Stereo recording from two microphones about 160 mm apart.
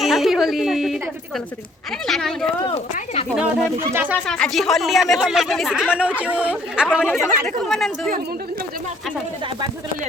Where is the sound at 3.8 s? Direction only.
15° right (ahead or behind).